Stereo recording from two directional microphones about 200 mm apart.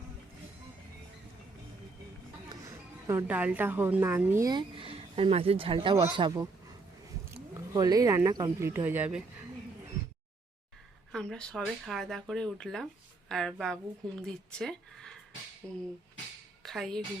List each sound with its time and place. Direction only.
2.5 s a woman's voice: 15° right (ahead or behind)
11.1 s a woman's voice: 5° left (ahead or behind)